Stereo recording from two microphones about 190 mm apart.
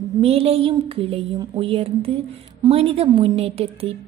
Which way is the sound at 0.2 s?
30° right (ahead or behind).